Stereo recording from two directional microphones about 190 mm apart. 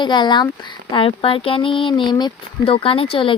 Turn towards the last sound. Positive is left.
turn(degrees=30)  # may be behind; listen again after turning